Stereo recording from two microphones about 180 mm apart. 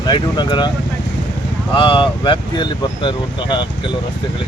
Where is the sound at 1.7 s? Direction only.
30° left (ahead or behind).